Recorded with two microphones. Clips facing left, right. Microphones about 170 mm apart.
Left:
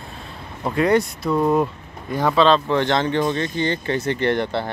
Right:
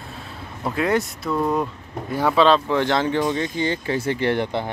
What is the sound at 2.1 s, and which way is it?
Speech, 10° right (ahead or behind).